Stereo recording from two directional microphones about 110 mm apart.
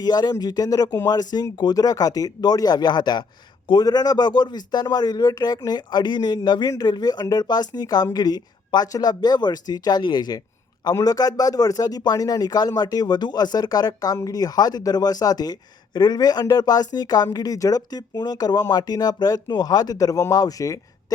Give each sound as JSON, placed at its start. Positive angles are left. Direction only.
{"t": 0.0, "sound": "speech", "side_deg": 40}